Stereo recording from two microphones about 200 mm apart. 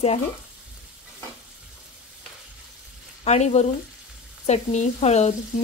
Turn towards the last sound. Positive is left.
turn(degrees=35)  # may be behind; listen again after turning